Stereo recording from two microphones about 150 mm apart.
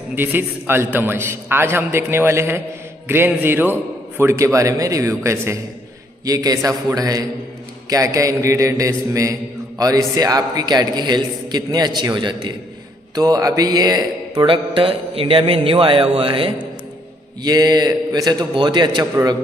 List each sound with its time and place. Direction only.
0.1 s a man's voice: 15° right (ahead or behind)
4.2 s mantra: 20° right (ahead or behind)
13.1 s speech: 25° right (ahead or behind)
17.4 s mantra: 25° right (ahead or behind)